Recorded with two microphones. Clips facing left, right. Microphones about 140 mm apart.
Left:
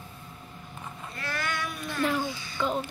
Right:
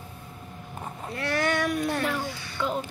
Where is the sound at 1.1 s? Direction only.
70° right (ahead or behind).